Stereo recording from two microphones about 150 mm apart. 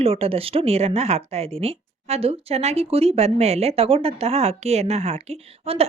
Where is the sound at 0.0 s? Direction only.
40° right (ahead or behind).